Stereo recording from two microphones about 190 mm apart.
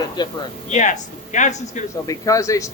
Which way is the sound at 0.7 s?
40° left (ahead or behind).